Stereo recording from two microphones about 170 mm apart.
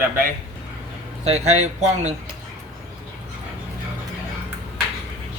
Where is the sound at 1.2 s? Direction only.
40° right (ahead or behind).